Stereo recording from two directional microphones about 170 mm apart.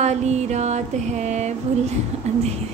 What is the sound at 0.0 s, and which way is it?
Mantra, 40° right (ahead or behind).